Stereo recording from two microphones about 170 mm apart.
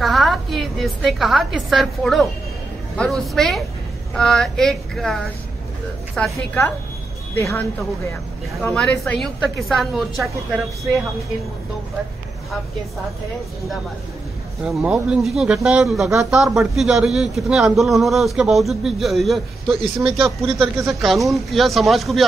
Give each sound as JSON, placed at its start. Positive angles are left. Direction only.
{"t": 0.0, "sound": "a woman's voice", "side_deg": 0}
{"t": 8.6, "sound": "a man's voice", "side_deg": 5}
{"t": 14.6, "sound": "a man's voice", "side_deg": 0}
{"t": 20.7, "sound": "speech", "side_deg": -20}
{"t": 21.0, "sound": "a man's voice", "side_deg": 0}